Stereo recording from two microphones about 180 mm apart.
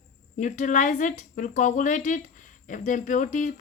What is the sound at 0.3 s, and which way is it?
Speech, 45° left (ahead or behind).